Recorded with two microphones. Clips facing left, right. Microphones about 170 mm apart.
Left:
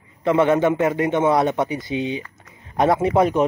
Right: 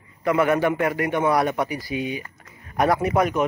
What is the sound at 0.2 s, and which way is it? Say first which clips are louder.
A man's voice: left 3 dB; 25° left (ahead or behind).